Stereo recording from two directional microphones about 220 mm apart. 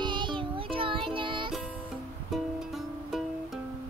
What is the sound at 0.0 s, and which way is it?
Music, 20° right (ahead or behind).